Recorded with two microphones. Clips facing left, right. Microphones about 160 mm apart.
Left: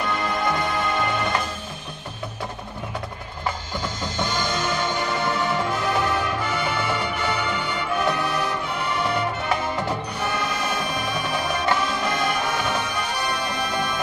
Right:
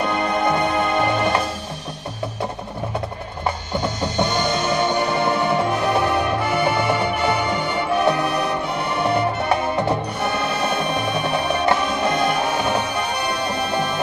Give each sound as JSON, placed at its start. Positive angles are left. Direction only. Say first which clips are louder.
{"t": 0.4, "sound": "music", "louder": "right 5 dB", "side_deg": -30}
{"t": 3.7, "sound": "music", "louder": "right 6 dB", "side_deg": -60}
{"t": 5.0, "sound": "music", "louder": "right 4 dB", "side_deg": -25}
{"t": 9.8, "sound": "music", "louder": "right 5 dB", "side_deg": -30}